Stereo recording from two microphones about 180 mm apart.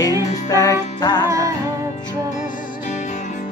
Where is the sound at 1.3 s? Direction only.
15° right (ahead or behind).